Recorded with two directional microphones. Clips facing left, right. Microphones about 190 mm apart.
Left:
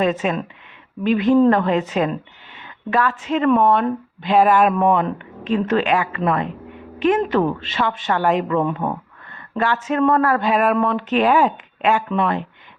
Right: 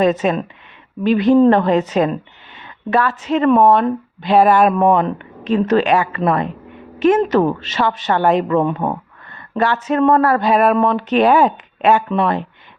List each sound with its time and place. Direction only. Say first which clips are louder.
0.0 s speech: right 4 dB; 35° right (ahead or behind)
2.9 s speech: right 3 dB; 40° right (ahead or behind)